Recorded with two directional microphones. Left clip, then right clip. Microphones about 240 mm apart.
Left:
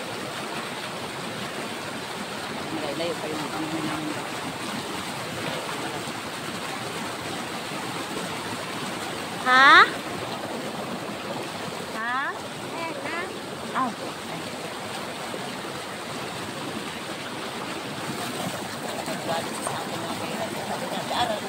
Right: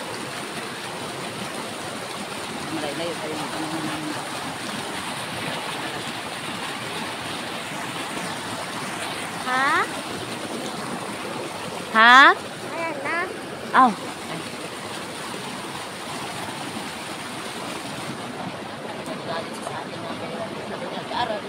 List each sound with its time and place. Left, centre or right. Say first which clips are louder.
9.5 s speech: left 7 dB; centre
12.0 s speech: right 17 dB; right
13.7 s vehicle: right 11 dB; right